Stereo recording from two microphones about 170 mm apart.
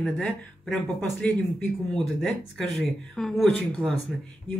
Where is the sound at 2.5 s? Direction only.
Centre (ahead or behind).